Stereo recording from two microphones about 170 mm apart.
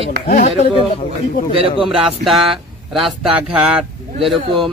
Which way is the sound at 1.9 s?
Centre (ahead or behind).